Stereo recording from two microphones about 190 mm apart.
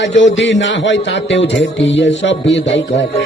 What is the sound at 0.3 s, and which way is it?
Speech, 75° left (ahead or behind).